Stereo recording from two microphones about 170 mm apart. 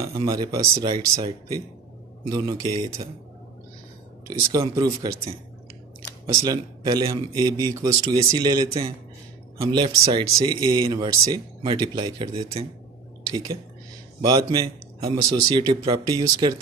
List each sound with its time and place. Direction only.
0.0 s speech: 25° right (ahead or behind)
4.3 s speech: 20° right (ahead or behind)
6.2 s speech: 20° right (ahead or behind)
14.2 s a man's voice: 20° right (ahead or behind)